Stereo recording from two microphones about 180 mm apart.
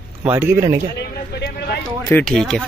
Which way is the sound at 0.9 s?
65° left (ahead or behind).